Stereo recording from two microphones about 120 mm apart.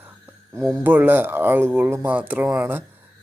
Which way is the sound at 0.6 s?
20° right (ahead or behind).